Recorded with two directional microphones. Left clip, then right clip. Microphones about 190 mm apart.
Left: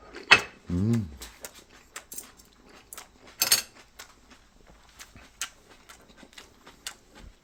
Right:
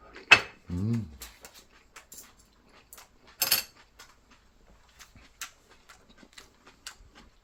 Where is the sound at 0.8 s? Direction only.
40° left (ahead or behind).